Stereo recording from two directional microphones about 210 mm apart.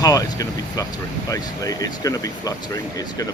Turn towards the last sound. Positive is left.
turn(degrees=15)  # may be behind; listen again after turning